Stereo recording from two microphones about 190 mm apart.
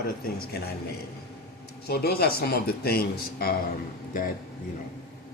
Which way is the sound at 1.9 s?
55° left (ahead or behind).